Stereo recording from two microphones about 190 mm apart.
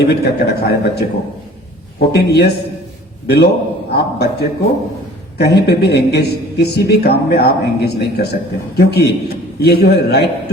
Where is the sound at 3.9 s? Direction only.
60° left (ahead or behind).